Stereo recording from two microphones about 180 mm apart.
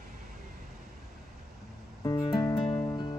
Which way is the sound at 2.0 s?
20° left (ahead or behind).